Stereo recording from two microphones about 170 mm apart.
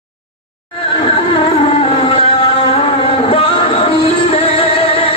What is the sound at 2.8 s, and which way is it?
Music, 30° left (ahead or behind).